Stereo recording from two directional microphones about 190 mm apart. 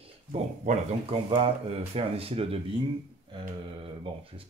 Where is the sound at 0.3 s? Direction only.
30° right (ahead or behind).